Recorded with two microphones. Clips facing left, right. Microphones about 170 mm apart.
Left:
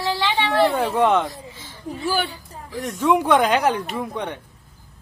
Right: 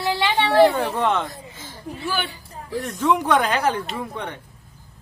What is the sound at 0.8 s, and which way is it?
Speech, 15° left (ahead or behind).